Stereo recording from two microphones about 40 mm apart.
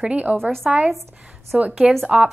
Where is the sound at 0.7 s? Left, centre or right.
Right.